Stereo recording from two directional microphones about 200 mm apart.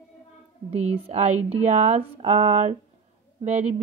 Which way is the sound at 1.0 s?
35° right (ahead or behind).